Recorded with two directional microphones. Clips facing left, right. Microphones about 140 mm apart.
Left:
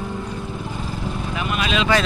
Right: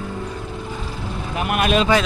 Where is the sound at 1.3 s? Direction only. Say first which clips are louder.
Right 5 dB; 55° right (ahead or behind).